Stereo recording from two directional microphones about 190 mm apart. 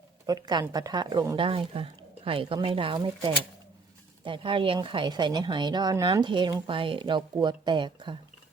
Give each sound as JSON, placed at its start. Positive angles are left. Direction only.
{"t": 0.3, "sound": "a woman's voice", "side_deg": -20}